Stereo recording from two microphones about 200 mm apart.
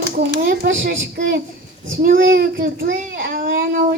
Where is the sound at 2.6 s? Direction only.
45° right (ahead or behind).